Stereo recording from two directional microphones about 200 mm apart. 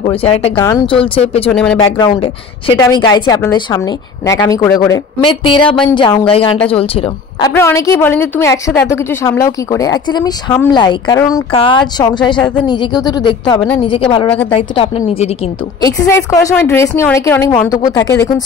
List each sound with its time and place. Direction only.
0.0 s speech: 30° left (ahead or behind)
0.7 s a woman's voice: 15° left (ahead or behind)
0.9 s speech: 30° left (ahead or behind)
1.5 s a woman's voice: 5° left (ahead or behind)
2.8 s speech: 20° left (ahead or behind)
5.7 s a woman's voice: 5° left (ahead or behind)
5.9 s speech: 25° left (ahead or behind)
7.5 s a woman's voice: 15° left (ahead or behind)
15.8 s a woman's voice: 15° left (ahead or behind)